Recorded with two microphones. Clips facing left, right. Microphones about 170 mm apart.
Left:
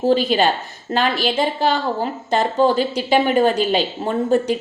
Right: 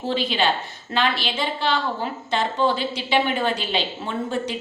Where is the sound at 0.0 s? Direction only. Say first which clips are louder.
Left 7 dB; 45° left (ahead or behind).